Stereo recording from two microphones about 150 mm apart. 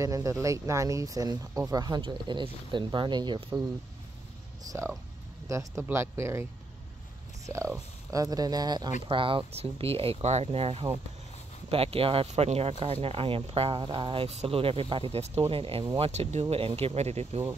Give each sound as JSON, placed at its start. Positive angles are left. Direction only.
{"t": 0.0, "sound": "speech", "side_deg": -20}
{"t": 4.6, "sound": "speech", "side_deg": -20}
{"t": 7.4, "sound": "speech", "side_deg": -20}
{"t": 16.1, "sound": "speech", "side_deg": -45}